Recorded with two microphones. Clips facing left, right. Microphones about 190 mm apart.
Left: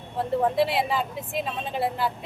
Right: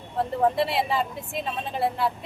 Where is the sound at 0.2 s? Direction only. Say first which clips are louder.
Even; centre (ahead or behind).